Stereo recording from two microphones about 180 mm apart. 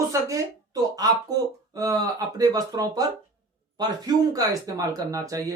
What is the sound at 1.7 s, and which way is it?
Speech, 20° right (ahead or behind).